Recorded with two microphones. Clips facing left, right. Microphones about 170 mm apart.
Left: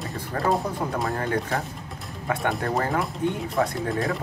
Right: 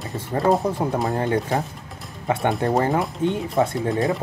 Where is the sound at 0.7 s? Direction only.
20° right (ahead or behind).